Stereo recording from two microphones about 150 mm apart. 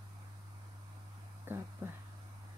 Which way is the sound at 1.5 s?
15° right (ahead or behind).